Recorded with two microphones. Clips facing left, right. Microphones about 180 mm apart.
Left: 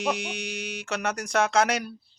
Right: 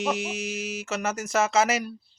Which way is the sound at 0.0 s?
Centre (ahead or behind).